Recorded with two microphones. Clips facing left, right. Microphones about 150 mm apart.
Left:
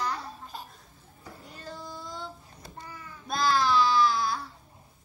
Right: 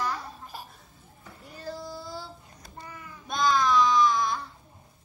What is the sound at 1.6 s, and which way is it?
Child singing, 5° right (ahead or behind).